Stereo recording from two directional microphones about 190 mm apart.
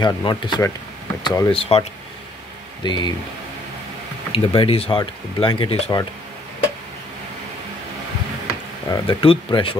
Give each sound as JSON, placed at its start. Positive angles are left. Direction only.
{"t": 0.0, "sound": "speech", "side_deg": 25}
{"t": 1.5, "sound": "speech", "side_deg": 30}
{"t": 4.3, "sound": "speech", "side_deg": 30}
{"t": 8.8, "sound": "speech", "side_deg": 25}